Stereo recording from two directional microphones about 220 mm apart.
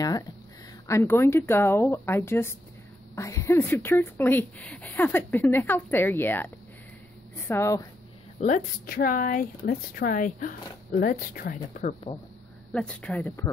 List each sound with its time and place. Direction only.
0.8 s a woman's voice: 10° left (ahead or behind)
8.4 s speech: 40° left (ahead or behind)
12.7 s speech: 5° left (ahead or behind)